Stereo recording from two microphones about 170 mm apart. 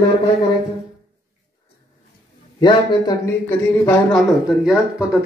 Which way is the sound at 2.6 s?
25° left (ahead or behind).